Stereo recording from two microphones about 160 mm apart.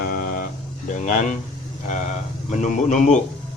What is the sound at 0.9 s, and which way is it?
Speech, 50° left (ahead or behind).